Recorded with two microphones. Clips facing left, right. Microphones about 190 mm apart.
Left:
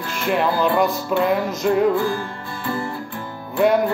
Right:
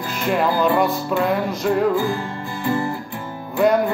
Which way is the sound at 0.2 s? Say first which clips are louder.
Right 1 dB; centre (ahead or behind).